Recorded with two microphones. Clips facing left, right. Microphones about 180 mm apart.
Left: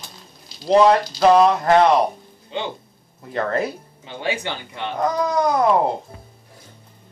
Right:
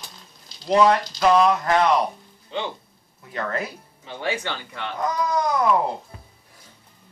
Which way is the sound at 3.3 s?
30° left (ahead or behind).